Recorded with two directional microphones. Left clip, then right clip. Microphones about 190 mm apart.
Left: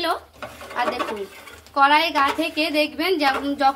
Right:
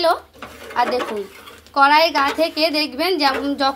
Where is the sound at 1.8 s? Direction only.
35° right (ahead or behind).